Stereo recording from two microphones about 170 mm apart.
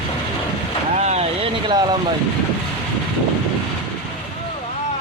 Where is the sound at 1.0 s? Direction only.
40° right (ahead or behind).